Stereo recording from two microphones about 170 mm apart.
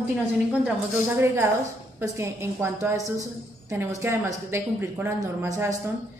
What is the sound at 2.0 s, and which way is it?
A woman's voice, 15° right (ahead or behind).